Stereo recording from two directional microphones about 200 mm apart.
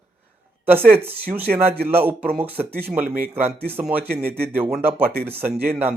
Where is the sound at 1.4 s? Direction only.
10° right (ahead or behind).